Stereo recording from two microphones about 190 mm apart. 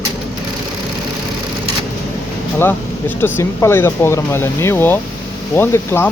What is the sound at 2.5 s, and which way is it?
Speech, 10° left (ahead or behind).